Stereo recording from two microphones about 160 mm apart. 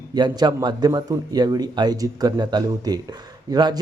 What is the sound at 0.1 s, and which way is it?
Speech, 25° right (ahead or behind).